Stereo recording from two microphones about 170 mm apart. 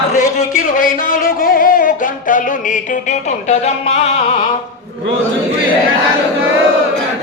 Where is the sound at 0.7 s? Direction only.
55° left (ahead or behind); by 4.2 s 40° left (ahead or behind).